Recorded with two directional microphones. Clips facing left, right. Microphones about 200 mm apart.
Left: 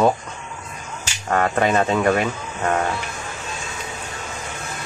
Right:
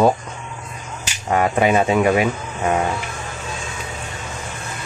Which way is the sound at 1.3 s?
10° right (ahead or behind).